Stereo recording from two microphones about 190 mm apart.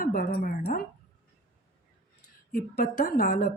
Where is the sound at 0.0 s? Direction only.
50° left (ahead or behind).